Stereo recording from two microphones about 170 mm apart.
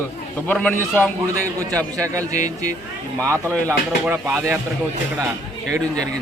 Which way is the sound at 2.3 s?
45° left (ahead or behind).